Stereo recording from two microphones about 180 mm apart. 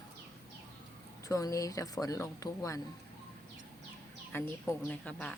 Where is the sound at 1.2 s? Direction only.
20° left (ahead or behind).